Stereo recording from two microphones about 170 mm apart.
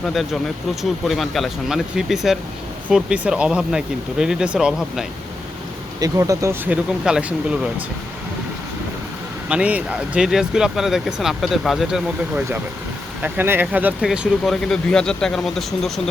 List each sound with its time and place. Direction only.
0.8 s speech: centre (ahead or behind)
6.0 s speech: 20° right (ahead or behind)
9.5 s speech: 5° right (ahead or behind)
13.2 s speech: 10° right (ahead or behind)